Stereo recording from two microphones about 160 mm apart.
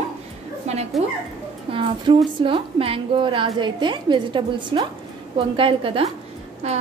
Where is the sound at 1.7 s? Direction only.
35° right (ahead or behind).